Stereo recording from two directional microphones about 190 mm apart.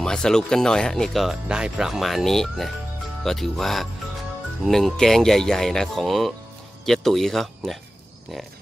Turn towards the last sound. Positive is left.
turn(degrees=0)  # may be behind; listen again after turning